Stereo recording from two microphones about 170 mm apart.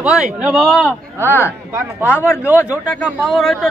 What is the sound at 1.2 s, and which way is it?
Speech, 15° left (ahead or behind).